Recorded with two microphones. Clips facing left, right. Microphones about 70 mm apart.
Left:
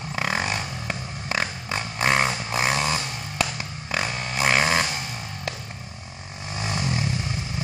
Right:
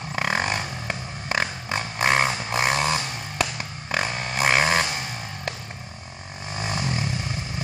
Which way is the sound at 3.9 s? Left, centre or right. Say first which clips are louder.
Right 1 dB; right.